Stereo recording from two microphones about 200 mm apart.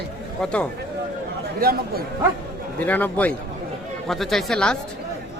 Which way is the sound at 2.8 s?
10° left (ahead or behind).